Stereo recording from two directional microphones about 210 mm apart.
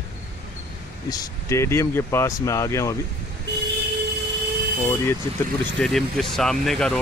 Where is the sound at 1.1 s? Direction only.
15° left (ahead or behind).